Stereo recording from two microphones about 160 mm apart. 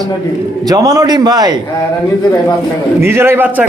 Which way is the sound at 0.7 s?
25° right (ahead or behind).